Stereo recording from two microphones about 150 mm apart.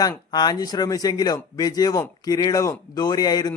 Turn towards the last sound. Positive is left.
turn(degrees=25)  # may be behind; listen again after turning